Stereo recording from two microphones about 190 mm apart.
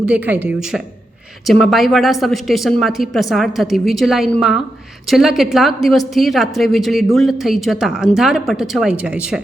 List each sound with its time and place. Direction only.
0.0 s speech: 5° right (ahead or behind)